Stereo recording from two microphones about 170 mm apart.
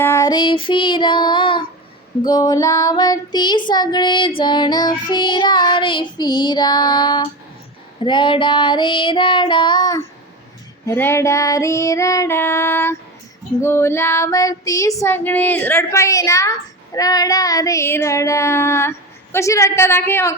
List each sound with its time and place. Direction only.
0.0 s child singing: 15° left (ahead or behind)
10.8 s female singing: 15° left (ahead or behind)